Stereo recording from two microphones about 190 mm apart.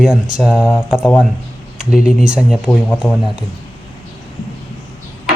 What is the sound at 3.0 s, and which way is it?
Speech, centre (ahead or behind).